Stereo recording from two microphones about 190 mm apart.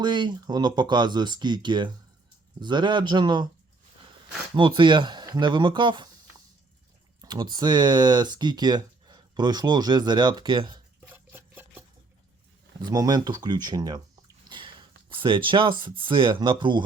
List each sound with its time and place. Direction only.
0.0 s speech: 25° right (ahead or behind)
4.5 s speech: 25° right (ahead or behind)
7.2 s speech: 25° right (ahead or behind)
11.1 s a sound: 10° right (ahead or behind)
12.8 s speech: 20° right (ahead or behind)
14.5 s a sound: 25° right (ahead or behind)
15.8 s speech: 25° right (ahead or behind)